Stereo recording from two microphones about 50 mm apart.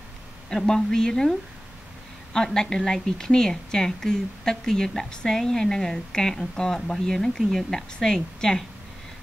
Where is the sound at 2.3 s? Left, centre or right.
Centre.